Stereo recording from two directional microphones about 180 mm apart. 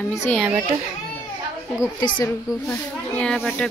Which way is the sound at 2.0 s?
25° left (ahead or behind).